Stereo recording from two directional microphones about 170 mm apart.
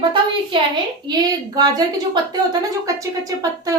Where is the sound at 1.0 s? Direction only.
25° right (ahead or behind).